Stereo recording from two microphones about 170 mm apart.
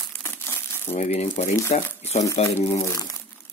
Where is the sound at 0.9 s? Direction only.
40° left (ahead or behind).